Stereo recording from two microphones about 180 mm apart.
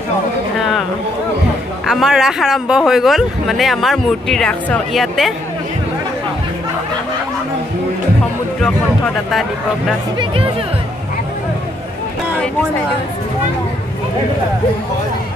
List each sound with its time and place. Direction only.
1.9 s speech: centre (ahead or behind)
8.6 s speech: centre (ahead or behind)
10.1 s speech: 30° right (ahead or behind)